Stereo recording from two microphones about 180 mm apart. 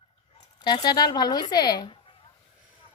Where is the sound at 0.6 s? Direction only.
25° left (ahead or behind).